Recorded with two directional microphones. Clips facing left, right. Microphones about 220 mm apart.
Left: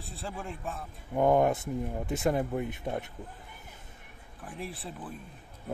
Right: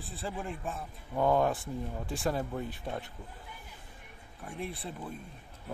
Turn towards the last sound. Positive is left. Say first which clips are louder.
# right 1 dB
turn(degrees=0)  # may be behind; listen again after turning